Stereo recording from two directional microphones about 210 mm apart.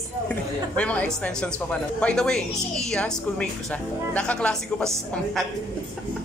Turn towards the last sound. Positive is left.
turn(degrees=0)  # may be behind; listen again after turning